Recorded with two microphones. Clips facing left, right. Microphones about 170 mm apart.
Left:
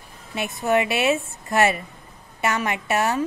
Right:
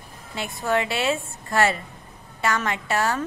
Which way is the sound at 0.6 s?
20° left (ahead or behind).